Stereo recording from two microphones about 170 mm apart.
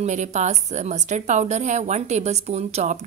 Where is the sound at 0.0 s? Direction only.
45° right (ahead or behind).